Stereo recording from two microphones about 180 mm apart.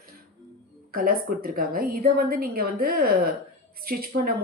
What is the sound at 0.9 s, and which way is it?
A woman's voice, 55° right (ahead or behind).